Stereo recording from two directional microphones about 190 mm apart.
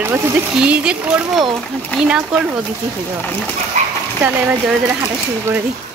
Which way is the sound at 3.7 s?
40° right (ahead or behind).